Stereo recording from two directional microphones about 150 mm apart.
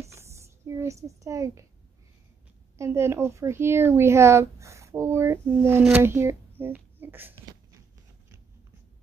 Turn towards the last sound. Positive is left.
turn(degrees=-15)  # may be behind; listen again after turning